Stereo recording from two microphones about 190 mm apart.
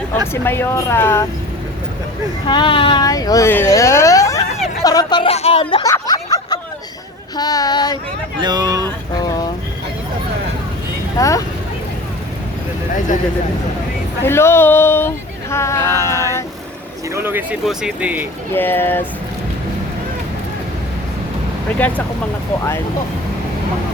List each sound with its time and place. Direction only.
0.4 s speech: 10° left (ahead or behind)
2.5 s speech: 25° left (ahead or behind)
5.8 s a sound: 20° left (ahead or behind)
7.3 s speech: 20° left (ahead or behind)
8.4 s speech: 20° right (ahead or behind)
9.2 s a sound: 20° left (ahead or behind)
11.2 s speech: 15° left (ahead or behind)
14.3 s speech: 15° left (ahead or behind)
16.0 s female singing: 15° left (ahead or behind)
17.2 s speech: 10° right (ahead or behind)
18.5 s speech: 10° left (ahead or behind)
21.8 s speech: 10° left (ahead or behind)